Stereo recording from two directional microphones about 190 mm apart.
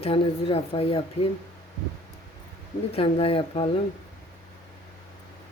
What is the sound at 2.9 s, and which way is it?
Speech, 30° left (ahead or behind).